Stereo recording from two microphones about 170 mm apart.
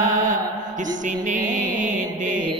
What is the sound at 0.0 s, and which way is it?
Mantra, 50° right (ahead or behind).